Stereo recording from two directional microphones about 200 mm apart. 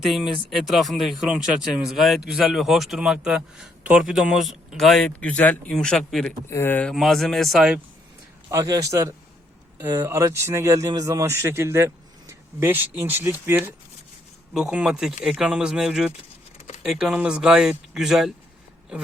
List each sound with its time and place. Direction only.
0.5 s a man's voice: centre (ahead or behind)
8.4 s a man's voice: 15° right (ahead or behind)